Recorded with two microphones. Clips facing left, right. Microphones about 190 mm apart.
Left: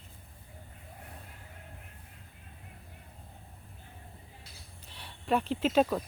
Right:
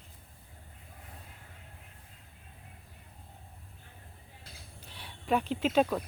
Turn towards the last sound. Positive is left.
turn(degrees=5)  # may be behind; listen again after turning